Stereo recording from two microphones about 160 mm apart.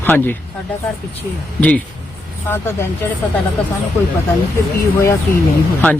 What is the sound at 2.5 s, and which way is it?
Speech, 15° left (ahead or behind).